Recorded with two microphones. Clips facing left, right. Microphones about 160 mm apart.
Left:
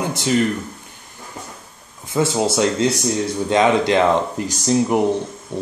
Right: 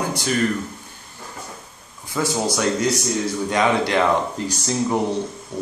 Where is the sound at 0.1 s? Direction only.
20° left (ahead or behind).